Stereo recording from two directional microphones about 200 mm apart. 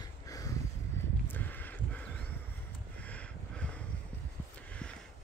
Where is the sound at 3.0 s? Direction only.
5° left (ahead or behind).